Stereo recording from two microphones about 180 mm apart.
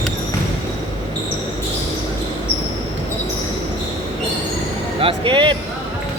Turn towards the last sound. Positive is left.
turn(degrees=-30)  # may be behind; listen again after turning